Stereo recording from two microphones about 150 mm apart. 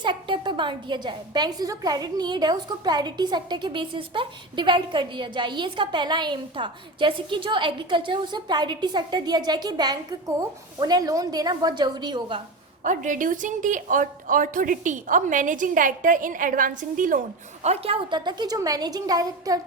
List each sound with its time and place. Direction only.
0.0 s a woman's voice: 30° right (ahead or behind)
12.8 s a woman's voice: 60° right (ahead or behind); by 19.5 s 25° right (ahead or behind)